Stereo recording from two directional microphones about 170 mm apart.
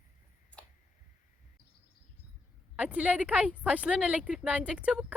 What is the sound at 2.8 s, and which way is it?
Speech, 5° right (ahead or behind).